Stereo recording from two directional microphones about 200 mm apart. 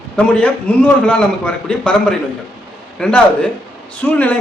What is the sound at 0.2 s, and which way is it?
A man's voice, 5° left (ahead or behind).